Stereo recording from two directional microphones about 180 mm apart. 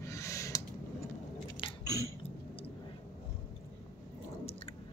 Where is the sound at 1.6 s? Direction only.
25° left (ahead or behind).